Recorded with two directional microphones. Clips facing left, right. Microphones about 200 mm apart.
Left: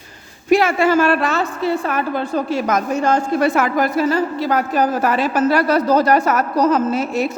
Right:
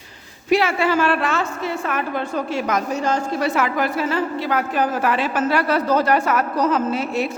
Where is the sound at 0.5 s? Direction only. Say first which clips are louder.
Left 4 dB; 45° left (ahead or behind).